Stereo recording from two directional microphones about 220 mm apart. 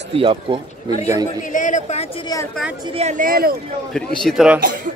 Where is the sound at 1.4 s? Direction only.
35° left (ahead or behind).